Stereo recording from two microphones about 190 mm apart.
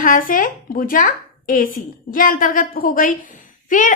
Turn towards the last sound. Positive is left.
turn(degrees=45)  # may be behind; listen again after turning